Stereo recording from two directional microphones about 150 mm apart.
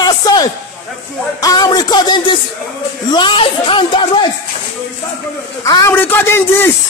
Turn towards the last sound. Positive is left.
turn(degrees=15)  # may be behind; listen again after turning